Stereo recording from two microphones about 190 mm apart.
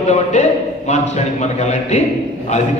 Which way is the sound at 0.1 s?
40° left (ahead or behind).